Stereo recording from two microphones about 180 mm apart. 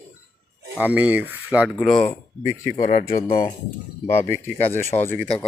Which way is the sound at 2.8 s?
45° left (ahead or behind).